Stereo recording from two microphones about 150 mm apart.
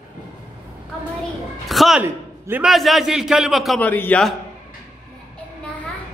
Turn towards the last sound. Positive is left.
turn(degrees=5)  # may be behind; listen again after turning